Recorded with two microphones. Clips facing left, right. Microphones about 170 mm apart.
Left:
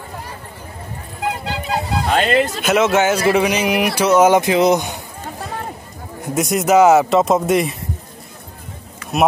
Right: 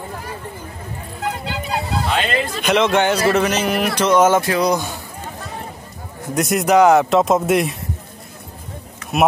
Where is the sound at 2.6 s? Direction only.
5° left (ahead or behind); by 4.9 s 20° left (ahead or behind).